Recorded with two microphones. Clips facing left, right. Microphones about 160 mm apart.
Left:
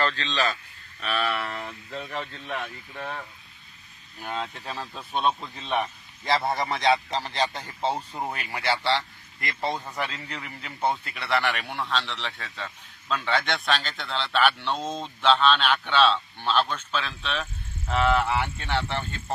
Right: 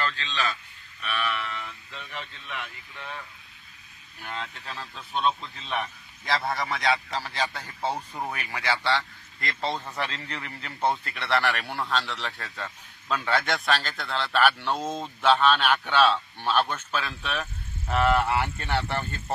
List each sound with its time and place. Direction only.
0.0 s a man's voice: 35° left (ahead or behind)
7.5 s a man's voice: 10° left (ahead or behind); by 19.3 s 10° right (ahead or behind)